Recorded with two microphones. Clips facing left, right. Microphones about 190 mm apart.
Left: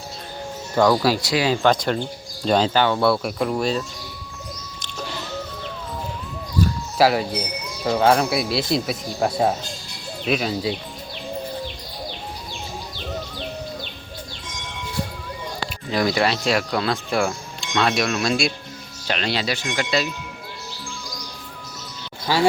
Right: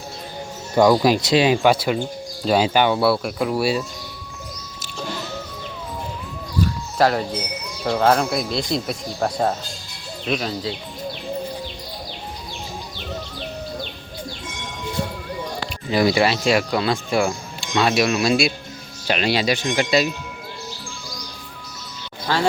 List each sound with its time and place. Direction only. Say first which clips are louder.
0.8 s speech: right 3 dB; 15° right (ahead or behind)
1.6 s speech: right 1 dB; 10° right (ahead or behind)
7.0 s speech: left 1 dB; 5° left (ahead or behind)
15.9 s speech: right 3 dB; 5° right (ahead or behind)
22.3 s speech: left 1 dB; 10° left (ahead or behind)